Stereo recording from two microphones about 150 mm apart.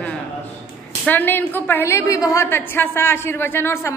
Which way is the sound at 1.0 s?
10° left (ahead or behind).